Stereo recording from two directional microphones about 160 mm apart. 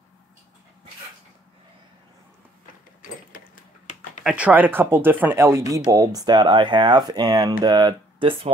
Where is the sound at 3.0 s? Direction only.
60° left (ahead or behind).